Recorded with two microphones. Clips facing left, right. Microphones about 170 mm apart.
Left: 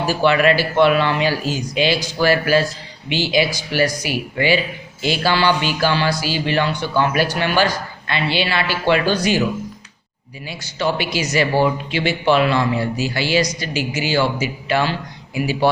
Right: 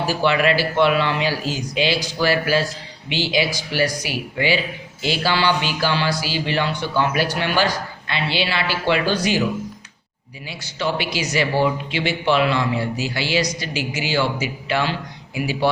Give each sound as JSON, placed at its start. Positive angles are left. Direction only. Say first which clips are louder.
{"t": 0.2, "sound": "speech", "louder": "left 3 dB", "side_deg": 50}
{"t": 10.4, "sound": "speech", "louder": "left 3 dB", "side_deg": 45}